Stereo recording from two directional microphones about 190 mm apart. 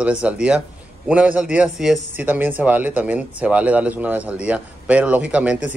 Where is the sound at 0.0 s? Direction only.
5° right (ahead or behind).